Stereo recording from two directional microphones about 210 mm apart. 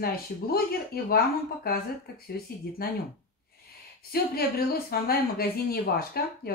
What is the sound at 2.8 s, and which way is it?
Speech, 45° left (ahead or behind).